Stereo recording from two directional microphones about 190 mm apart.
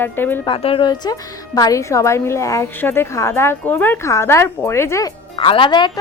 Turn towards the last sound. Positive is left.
turn(degrees=25)  # may be behind; listen again after turning